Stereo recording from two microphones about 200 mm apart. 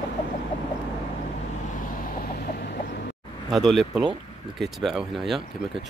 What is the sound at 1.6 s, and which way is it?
Chicken, 40° left (ahead or behind).